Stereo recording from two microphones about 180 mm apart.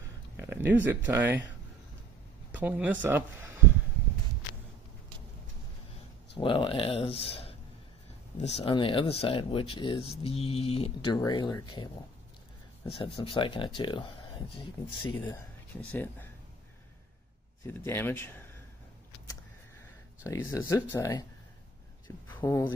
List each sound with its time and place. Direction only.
0.4 s speech: 10° right (ahead or behind)
2.5 s speech: 10° right (ahead or behind)
6.3 s speech: 25° left (ahead or behind)
11.1 s speech: 25° left (ahead or behind)
15.8 s speech: 10° left (ahead or behind)
17.6 s speech: 10° left (ahead or behind)
20.2 s speech: 15° left (ahead or behind)
22.3 s speech: 15° left (ahead or behind)